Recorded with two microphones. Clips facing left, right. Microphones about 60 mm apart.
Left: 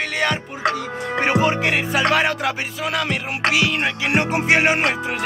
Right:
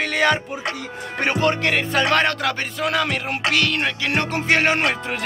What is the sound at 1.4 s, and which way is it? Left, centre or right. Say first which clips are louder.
Music: left 1 dB; centre.